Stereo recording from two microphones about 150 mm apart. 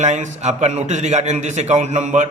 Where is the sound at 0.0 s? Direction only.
50° right (ahead or behind).